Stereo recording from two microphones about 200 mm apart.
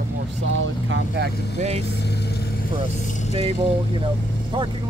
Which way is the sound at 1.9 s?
55° left (ahead or behind).